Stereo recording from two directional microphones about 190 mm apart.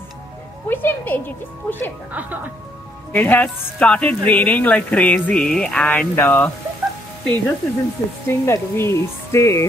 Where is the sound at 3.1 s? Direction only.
10° left (ahead or behind).